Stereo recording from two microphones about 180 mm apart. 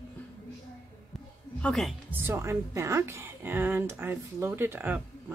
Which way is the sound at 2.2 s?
15° right (ahead or behind).